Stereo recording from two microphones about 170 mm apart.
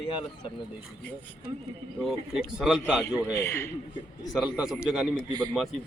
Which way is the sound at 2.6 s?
5° right (ahead or behind).